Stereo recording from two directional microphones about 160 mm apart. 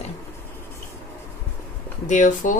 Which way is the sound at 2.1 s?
50° left (ahead or behind).